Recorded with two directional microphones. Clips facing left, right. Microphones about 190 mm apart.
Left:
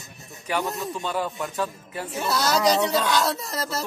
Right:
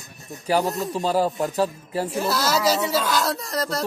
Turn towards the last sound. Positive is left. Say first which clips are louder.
# right 3 dB
turn(degrees=0)  # may be behind; listen again after turning